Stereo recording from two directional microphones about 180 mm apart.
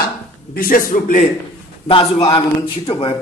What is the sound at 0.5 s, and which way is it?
Speech, 50° left (ahead or behind).